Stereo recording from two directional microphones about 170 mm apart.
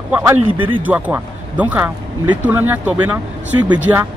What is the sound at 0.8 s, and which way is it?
Speech, 10° right (ahead or behind).